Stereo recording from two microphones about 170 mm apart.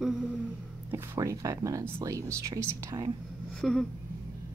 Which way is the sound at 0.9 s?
15° right (ahead or behind).